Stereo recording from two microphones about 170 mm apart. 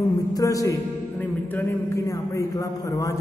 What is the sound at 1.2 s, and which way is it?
A woman's voice, 10° left (ahead or behind).